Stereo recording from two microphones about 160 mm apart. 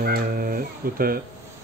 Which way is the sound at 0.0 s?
70° right (ahead or behind).